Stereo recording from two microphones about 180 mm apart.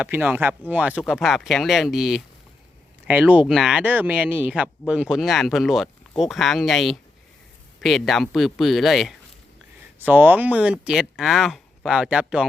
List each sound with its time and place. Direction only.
0.0 s speech: 10° right (ahead or behind)